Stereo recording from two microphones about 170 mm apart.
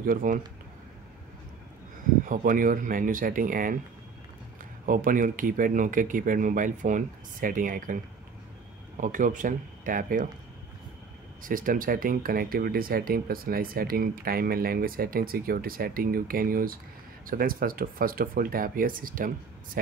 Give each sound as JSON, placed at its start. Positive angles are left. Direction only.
{"t": 0.0, "sound": "speech", "side_deg": -55}
{"t": 2.2, "sound": "speech", "side_deg": -55}
{"t": 4.8, "sound": "speech", "side_deg": -55}
{"t": 11.4, "sound": "speech", "side_deg": -55}